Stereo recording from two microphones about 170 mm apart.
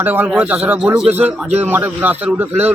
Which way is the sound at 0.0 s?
10° right (ahead or behind).